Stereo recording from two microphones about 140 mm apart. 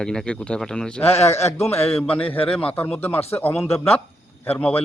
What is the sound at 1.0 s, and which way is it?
A man's voice, 50° left (ahead or behind).